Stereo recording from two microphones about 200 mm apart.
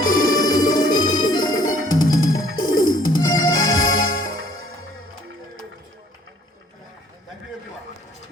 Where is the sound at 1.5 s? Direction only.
90° left.